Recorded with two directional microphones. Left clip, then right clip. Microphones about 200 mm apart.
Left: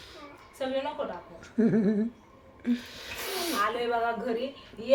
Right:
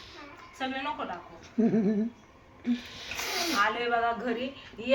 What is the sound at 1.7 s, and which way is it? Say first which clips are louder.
A woman's voice: left 1 dB; 15° left (ahead or behind).